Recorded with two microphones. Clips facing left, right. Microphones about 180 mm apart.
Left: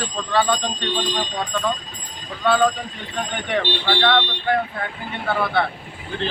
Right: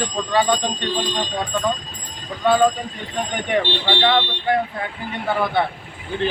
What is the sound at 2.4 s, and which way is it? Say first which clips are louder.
Speech: right 2 dB; 15° right (ahead or behind).